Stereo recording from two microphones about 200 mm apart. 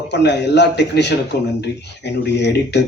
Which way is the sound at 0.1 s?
60° left (ahead or behind).